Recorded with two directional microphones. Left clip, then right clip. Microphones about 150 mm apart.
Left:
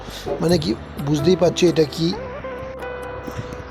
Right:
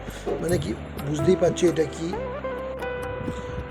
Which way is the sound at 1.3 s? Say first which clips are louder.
Left 4 dB; 40° left (ahead or behind).